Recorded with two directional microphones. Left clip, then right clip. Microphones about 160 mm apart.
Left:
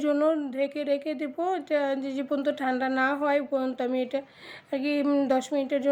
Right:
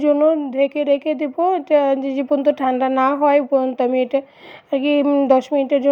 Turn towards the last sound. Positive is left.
turn(degrees=-30)  # may be behind; listen again after turning